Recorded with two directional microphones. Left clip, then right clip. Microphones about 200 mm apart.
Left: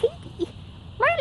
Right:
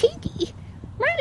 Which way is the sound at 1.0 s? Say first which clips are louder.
Left 2 dB; 5° right (ahead or behind).